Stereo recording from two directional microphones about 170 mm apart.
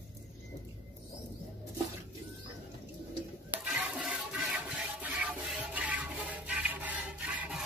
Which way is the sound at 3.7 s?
5° right (ahead or behind).